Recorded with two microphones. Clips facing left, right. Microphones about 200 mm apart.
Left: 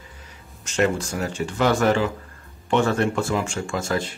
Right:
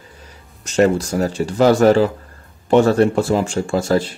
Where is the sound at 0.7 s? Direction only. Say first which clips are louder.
Right 7 dB; 35° right (ahead or behind).